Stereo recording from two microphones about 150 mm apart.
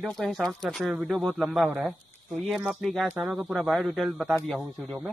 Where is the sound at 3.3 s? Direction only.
5° right (ahead or behind).